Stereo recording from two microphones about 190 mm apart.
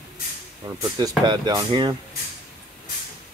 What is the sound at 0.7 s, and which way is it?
Speech, 20° right (ahead or behind).